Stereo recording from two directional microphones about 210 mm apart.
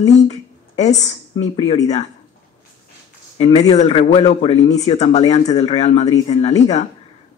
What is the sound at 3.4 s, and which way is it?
Speech, 30° left (ahead or behind).